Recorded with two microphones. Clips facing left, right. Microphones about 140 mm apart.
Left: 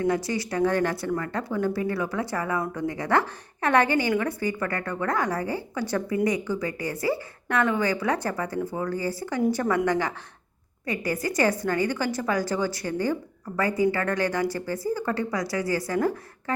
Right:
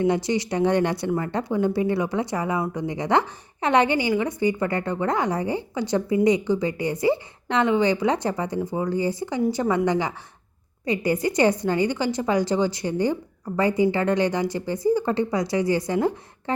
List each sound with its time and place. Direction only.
0.1 s a woman's voice: 20° right (ahead or behind)